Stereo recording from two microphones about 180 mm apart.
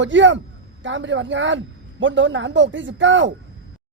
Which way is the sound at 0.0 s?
90° right.